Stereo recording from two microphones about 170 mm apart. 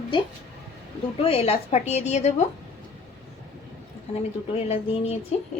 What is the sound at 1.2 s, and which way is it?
A woman's voice, 35° left (ahead or behind).